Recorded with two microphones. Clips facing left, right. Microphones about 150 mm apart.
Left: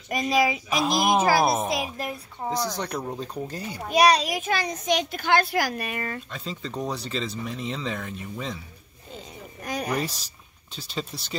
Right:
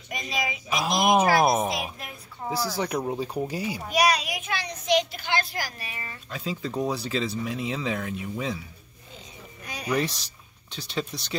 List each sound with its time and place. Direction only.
0.1 s a child's voice: 50° left (ahead or behind)
0.7 s speech: centre (ahead or behind)
3.9 s a child's voice: 30° left (ahead or behind); by 6.2 s 55° left (ahead or behind)
6.3 s speech: 5° right (ahead or behind)
9.7 s speech: 50° left (ahead or behind)
10.8 s speech: 5° left (ahead or behind)